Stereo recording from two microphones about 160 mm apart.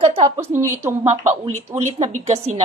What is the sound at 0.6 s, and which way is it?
Speech, 15° right (ahead or behind).